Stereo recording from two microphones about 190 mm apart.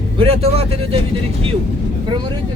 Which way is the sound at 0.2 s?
30° right (ahead or behind).